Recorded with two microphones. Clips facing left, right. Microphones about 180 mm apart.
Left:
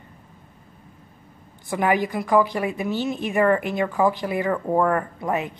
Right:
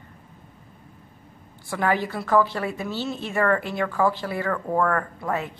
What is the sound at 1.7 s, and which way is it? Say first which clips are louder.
A woman's voice: left 3 dB; 15° left (ahead or behind).